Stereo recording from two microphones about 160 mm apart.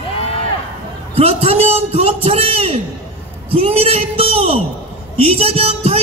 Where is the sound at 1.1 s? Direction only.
40° right (ahead or behind).